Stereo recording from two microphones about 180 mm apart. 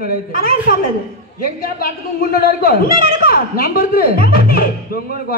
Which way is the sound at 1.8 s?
55° left (ahead or behind).